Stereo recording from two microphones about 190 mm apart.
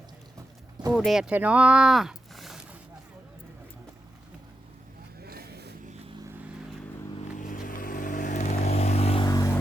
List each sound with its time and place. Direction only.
0.9 s speech: centre (ahead or behind)
5.2 s vehicle: 55° right (ahead or behind)
7.3 s vehicle: 45° left (ahead or behind); by 9.6 s 20° left (ahead or behind)